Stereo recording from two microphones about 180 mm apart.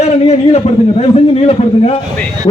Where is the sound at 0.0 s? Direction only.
35° left (ahead or behind).